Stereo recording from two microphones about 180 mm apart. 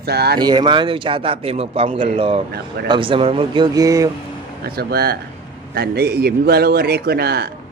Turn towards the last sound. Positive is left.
turn(degrees=-60)  # may be behind; listen again after turning